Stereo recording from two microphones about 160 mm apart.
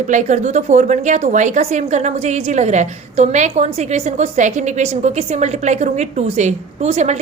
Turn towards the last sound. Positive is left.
turn(degrees=-45)  # may be behind; listen again after turning